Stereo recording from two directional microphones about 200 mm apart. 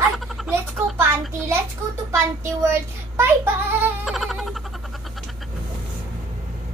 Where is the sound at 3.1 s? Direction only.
10° right (ahead or behind).